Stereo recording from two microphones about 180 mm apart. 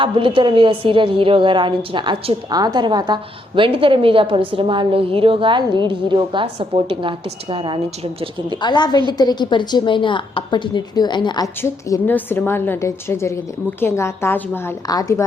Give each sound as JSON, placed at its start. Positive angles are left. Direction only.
{"t": 0.0, "sound": "a woman's voice", "side_deg": -30}
{"t": 8.6, "sound": "a woman's voice", "side_deg": 25}
{"t": 11.6, "sound": "a woman's voice", "side_deg": 10}